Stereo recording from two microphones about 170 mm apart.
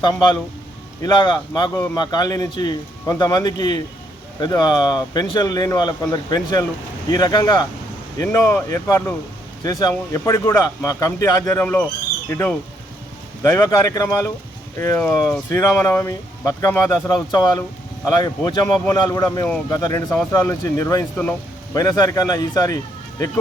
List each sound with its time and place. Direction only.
0.0 s speech: 25° left (ahead or behind); by 21.8 s 10° left (ahead or behind)
21.8 s speech: 20° left (ahead or behind)